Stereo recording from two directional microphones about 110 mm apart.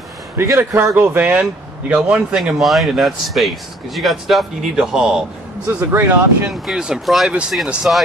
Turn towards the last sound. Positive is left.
turn(degrees=-5)  # may be behind; listen again after turning